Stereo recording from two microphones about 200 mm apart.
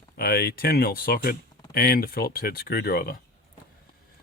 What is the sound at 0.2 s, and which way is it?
Speech, 50° left (ahead or behind).